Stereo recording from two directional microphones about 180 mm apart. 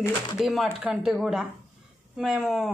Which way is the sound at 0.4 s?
Centre (ahead or behind).